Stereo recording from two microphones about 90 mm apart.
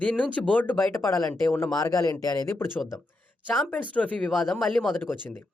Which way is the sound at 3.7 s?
15° left (ahead or behind).